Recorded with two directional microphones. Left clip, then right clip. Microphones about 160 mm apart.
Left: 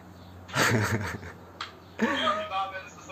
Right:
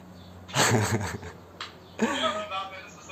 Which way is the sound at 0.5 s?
20° right (ahead or behind).